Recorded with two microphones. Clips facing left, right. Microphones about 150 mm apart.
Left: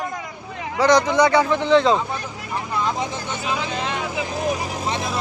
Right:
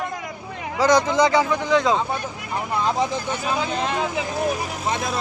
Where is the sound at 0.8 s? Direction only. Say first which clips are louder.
Left 1 dB; 10° right (ahead or behind).